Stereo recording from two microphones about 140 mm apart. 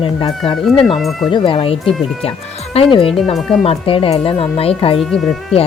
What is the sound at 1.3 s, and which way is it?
A woman's voice, 40° left (ahead or behind).